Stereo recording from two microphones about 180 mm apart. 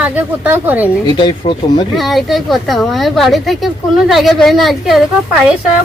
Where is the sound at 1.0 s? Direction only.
25° left (ahead or behind).